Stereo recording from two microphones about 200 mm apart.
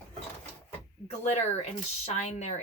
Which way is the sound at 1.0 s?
35° left (ahead or behind).